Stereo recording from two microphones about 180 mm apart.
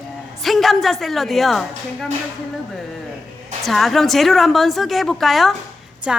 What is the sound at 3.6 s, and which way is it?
A woman's voice, centre (ahead or behind).